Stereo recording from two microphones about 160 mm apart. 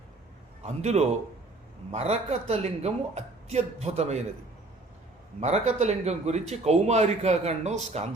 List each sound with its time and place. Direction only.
0.6 s a man's voice: 45° right (ahead or behind)
5.4 s a man's voice: 45° right (ahead or behind)